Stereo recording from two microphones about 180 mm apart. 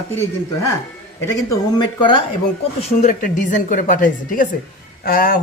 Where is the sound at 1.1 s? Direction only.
20° left (ahead or behind).